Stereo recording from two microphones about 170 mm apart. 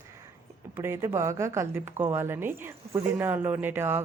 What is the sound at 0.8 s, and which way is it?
A woman's voice, 15° right (ahead or behind).